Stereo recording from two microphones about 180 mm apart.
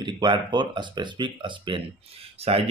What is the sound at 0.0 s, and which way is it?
Speech, 25° right (ahead or behind).